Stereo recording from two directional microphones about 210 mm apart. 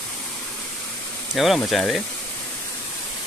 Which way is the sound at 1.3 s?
Centre (ahead or behind).